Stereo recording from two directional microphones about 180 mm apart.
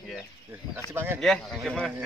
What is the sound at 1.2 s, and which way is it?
Speech, centre (ahead or behind).